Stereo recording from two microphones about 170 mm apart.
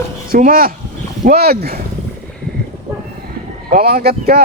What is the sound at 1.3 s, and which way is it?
Speech, 65° right (ahead or behind).